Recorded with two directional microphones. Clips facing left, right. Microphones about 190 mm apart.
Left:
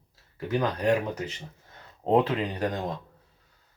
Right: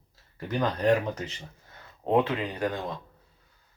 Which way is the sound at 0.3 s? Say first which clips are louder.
Left 1 dB; 10° left (ahead or behind).